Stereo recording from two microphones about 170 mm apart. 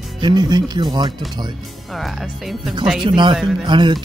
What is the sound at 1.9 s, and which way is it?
Speech, centre (ahead or behind).